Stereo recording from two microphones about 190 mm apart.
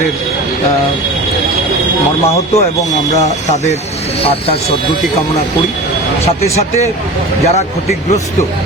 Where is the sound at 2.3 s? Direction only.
35° left (ahead or behind).